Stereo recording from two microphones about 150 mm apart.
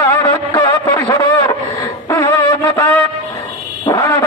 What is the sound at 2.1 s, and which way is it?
Music, 20° left (ahead or behind).